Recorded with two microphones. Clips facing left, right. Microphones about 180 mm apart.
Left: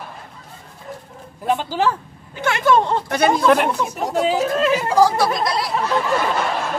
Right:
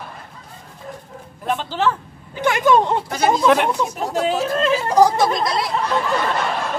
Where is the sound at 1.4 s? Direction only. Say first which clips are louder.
Left 1 dB; 10° left (ahead or behind).